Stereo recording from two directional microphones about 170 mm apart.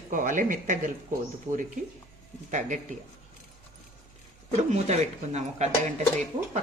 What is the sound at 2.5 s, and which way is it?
Speech, 45° right (ahead or behind).